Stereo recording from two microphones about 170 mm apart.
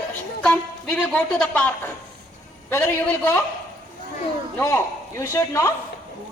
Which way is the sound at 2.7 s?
10° left (ahead or behind).